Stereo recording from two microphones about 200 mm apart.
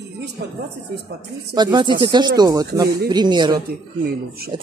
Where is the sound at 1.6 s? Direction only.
20° right (ahead or behind).